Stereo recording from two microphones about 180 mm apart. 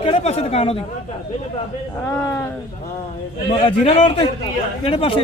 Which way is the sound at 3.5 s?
30° left (ahead or behind).